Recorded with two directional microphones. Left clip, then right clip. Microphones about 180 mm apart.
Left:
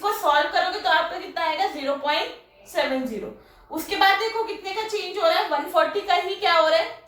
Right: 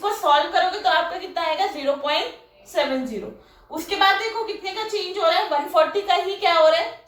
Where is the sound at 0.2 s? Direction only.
20° right (ahead or behind).